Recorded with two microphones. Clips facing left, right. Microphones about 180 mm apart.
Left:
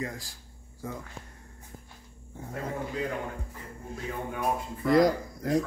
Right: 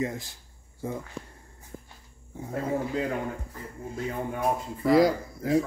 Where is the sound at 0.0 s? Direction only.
25° right (ahead or behind).